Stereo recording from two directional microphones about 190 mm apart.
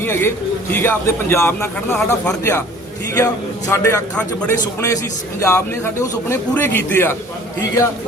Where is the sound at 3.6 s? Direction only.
15° left (ahead or behind).